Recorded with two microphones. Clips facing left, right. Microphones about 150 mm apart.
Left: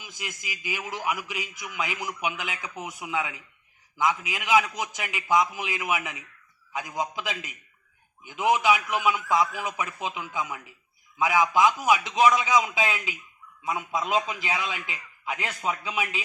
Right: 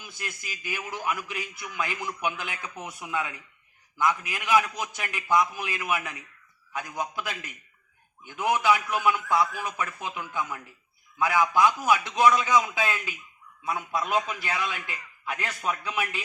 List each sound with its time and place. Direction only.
0.0 s a man's voice: 15° left (ahead or behind)